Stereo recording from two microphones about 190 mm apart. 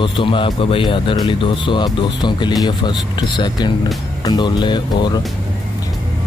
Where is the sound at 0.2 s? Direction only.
25° left (ahead or behind).